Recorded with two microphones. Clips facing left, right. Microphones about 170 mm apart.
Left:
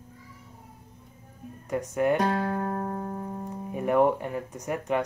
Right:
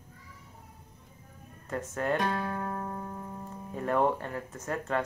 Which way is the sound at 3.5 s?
15° left (ahead or behind).